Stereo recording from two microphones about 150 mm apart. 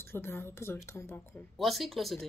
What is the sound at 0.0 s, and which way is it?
Speech, 15° left (ahead or behind).